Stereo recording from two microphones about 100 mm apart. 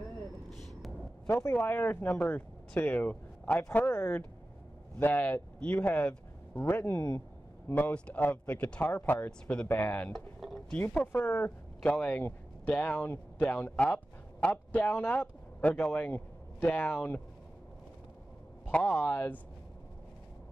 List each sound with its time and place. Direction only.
1.3 s speech: 25° left (ahead or behind)
10.1 s a sound: centre (ahead or behind)
11.1 s speech: 25° left (ahead or behind)
11.4 s speech: 15° left (ahead or behind)
18.7 s speech: 10° left (ahead or behind)